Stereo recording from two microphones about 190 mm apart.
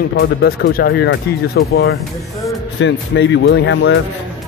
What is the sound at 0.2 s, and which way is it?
Speech, 55° left (ahead or behind).